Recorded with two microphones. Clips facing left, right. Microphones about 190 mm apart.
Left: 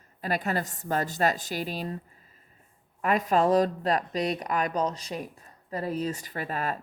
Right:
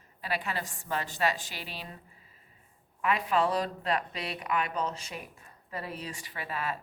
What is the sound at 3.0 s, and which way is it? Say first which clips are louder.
A woman's voice: left 4 dB; 45° left (ahead or behind).